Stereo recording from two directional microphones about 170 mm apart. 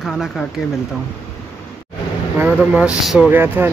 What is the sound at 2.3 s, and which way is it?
Speech, 10° right (ahead or behind).